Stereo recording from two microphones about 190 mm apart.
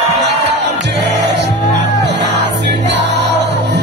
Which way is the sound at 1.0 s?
65° right (ahead or behind).